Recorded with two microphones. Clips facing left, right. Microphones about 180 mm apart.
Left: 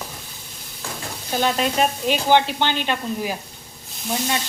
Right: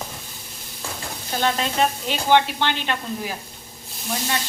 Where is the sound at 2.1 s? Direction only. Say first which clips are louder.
Left 2 dB; 15° left (ahead or behind).